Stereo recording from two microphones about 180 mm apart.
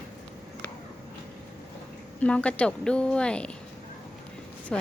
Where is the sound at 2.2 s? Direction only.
5° left (ahead or behind).